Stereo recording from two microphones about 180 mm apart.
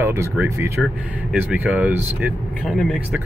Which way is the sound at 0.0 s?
15° right (ahead or behind).